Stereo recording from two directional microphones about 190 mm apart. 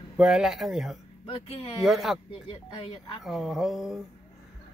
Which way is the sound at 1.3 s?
30° left (ahead or behind).